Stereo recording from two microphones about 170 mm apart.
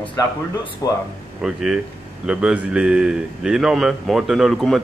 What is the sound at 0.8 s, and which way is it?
Speech, 20° left (ahead or behind).